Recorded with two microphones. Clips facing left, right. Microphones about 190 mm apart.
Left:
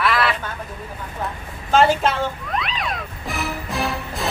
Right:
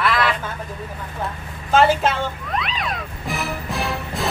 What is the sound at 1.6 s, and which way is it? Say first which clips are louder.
Music: even; centre (ahead or behind).